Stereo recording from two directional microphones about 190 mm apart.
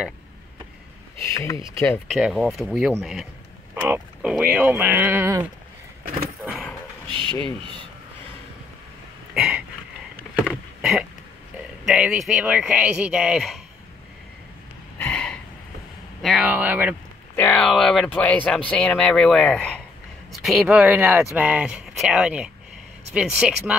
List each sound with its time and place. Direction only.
1.3 s speech: 15° left (ahead or behind)
2.1 s speech: centre (ahead or behind)
6.4 s roaring cats: centre (ahead or behind)
7.1 s speech: 25° right (ahead or behind)
9.3 s a sound: 5° right (ahead or behind)
11.8 s speech: 5° right (ahead or behind)
15.0 s a sound: 5° left (ahead or behind)
16.2 s speech: centre (ahead or behind)
17.4 s speech: 5° left (ahead or behind)